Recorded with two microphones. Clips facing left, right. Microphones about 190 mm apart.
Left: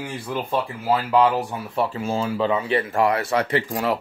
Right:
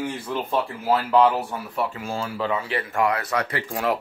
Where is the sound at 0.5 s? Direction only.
10° left (ahead or behind).